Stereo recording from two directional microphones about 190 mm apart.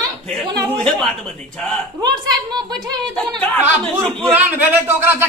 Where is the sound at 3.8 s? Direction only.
5° left (ahead or behind).